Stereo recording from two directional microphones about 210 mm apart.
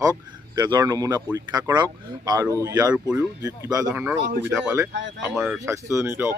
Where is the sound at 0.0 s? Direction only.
20° right (ahead or behind).